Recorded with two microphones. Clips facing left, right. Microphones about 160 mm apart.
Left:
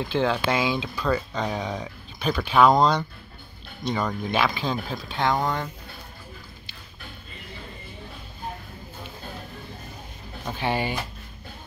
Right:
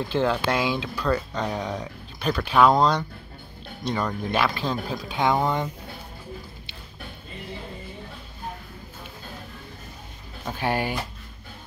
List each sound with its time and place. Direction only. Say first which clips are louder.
0.1 s speech: even; centre (ahead or behind); by 5.7 s 15° right (ahead or behind)
10.4 s speech: even; 5° right (ahead or behind)